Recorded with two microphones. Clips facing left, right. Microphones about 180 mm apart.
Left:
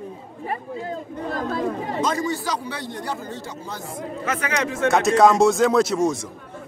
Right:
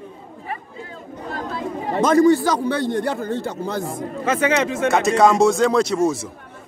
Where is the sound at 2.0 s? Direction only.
50° right (ahead or behind).